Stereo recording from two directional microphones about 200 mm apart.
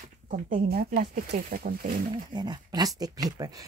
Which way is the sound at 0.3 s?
45° right (ahead or behind).